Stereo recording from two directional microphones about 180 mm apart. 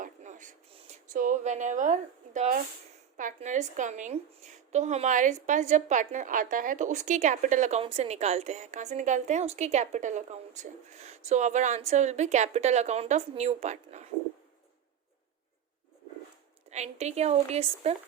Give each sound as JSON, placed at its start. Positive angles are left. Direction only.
{"t": 0.0, "sound": "a sound", "side_deg": -45}
{"t": 3.2, "sound": "a woman's voice", "side_deg": -45}
{"t": 16.6, "sound": "a woman's voice", "side_deg": -40}